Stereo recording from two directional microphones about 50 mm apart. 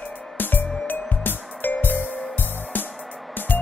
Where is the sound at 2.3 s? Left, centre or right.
Left.